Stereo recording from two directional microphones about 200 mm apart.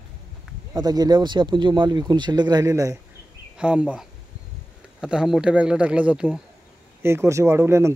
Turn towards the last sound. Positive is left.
turn(degrees=-15)  # may be behind; listen again after turning